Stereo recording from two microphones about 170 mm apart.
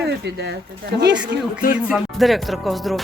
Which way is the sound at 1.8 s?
5° right (ahead or behind).